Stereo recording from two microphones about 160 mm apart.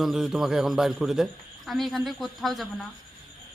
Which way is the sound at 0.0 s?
5° right (ahead or behind).